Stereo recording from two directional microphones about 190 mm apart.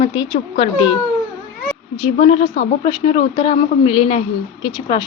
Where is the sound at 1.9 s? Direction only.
30° left (ahead or behind).